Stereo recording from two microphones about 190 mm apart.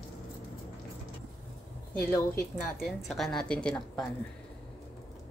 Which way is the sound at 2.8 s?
Centre (ahead or behind).